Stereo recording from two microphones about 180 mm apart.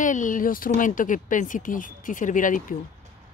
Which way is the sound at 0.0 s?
45° left (ahead or behind).